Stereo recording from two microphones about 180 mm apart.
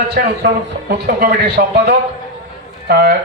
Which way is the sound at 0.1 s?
70° right (ahead or behind).